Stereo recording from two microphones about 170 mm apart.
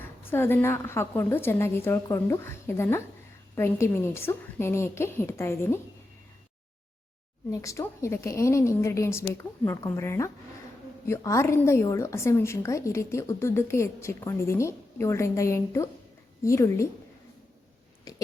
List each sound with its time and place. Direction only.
0.0 s a woman's voice: 15° left (ahead or behind)
7.5 s a woman's voice: 20° left (ahead or behind)
18.1 s a sound: 20° left (ahead or behind)